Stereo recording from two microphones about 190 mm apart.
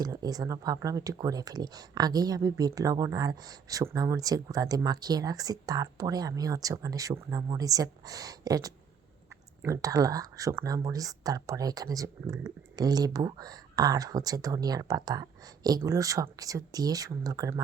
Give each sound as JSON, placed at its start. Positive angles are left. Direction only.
{"t": 0.0, "sound": "speech", "side_deg": -20}